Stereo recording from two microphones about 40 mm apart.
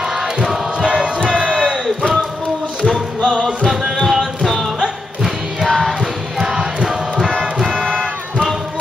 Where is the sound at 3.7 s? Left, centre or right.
Centre.